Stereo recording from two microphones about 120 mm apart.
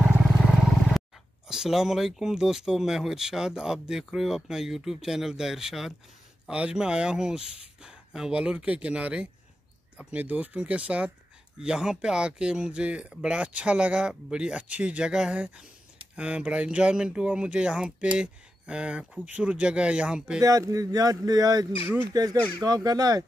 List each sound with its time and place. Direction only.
1.0 s roaring cats: centre (ahead or behind)
1.5 s speech: 5° right (ahead or behind)
20.4 s speech: 30° right (ahead or behind)